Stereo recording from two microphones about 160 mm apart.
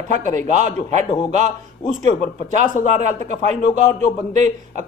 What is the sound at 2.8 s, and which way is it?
Speech, 45° right (ahead or behind).